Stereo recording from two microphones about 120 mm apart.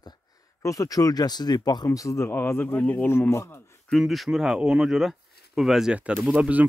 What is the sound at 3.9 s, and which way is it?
Speech, centre (ahead or behind).